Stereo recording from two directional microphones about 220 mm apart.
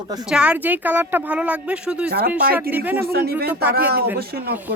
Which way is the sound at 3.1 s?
45° right (ahead or behind).